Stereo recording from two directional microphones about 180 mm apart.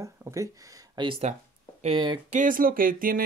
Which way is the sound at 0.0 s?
15° right (ahead or behind).